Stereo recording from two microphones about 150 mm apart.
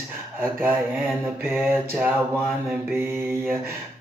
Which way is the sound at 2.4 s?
Centre (ahead or behind).